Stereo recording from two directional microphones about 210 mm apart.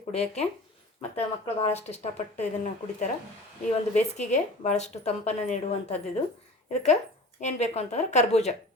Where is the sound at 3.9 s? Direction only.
35° left (ahead or behind).